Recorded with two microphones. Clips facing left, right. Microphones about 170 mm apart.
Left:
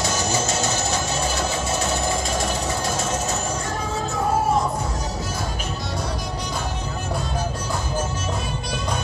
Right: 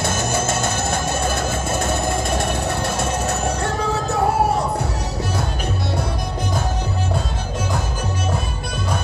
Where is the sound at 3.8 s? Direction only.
65° right (ahead or behind).